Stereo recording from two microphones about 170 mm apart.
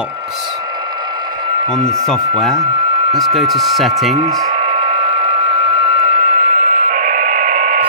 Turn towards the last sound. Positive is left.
turn(degrees=-45)  # may be behind; listen again after turning